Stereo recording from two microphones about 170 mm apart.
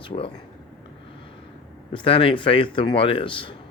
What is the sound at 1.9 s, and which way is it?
Speech, 30° left (ahead or behind).